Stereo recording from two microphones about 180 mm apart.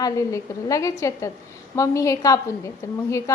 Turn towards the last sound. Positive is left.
turn(degrees=15)  # may be behind; listen again after turning